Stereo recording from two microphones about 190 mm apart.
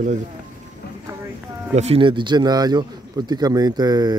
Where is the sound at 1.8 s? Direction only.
30° right (ahead or behind).